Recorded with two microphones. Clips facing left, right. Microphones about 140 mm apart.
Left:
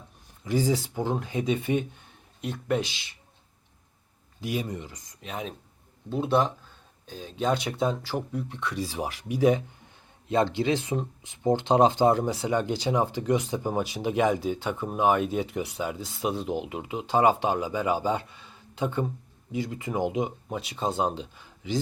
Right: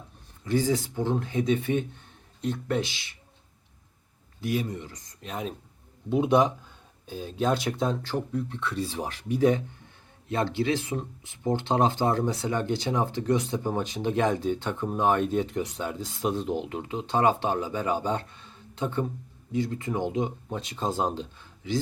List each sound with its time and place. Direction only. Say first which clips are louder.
0.4 s speech: even; 10° left (ahead or behind)
4.4 s speech: right 2 dB; 15° left (ahead or behind)
5.2 s speech: right 1 dB; centre (ahead or behind)
6.1 s speech: right 3 dB; 15° right (ahead or behind)
21.3 s a sound: right 1 dB; 15° left (ahead or behind)